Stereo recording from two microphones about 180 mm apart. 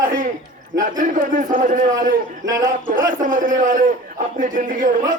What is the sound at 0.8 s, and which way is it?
A man's voice, 45° right (ahead or behind).